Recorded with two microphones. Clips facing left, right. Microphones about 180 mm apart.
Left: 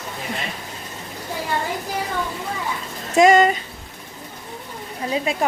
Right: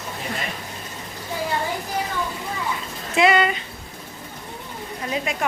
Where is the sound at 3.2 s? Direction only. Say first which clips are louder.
Left 5 dB; 40° left (ahead or behind).